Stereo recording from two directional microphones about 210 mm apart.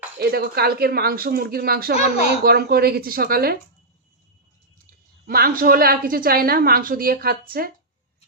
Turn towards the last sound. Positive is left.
turn(degrees=-45)  # may be behind; listen again after turning